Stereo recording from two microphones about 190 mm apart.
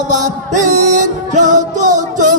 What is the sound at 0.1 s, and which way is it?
Music, 40° right (ahead or behind).